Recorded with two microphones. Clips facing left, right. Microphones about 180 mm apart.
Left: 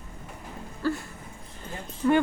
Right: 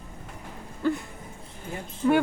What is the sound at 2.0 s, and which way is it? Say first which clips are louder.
Speech: even; 10° right (ahead or behind).